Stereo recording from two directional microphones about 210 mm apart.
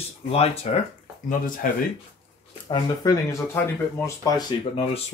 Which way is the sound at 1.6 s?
40° left (ahead or behind).